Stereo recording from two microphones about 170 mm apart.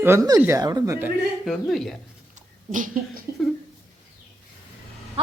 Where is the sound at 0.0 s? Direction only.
15° right (ahead or behind).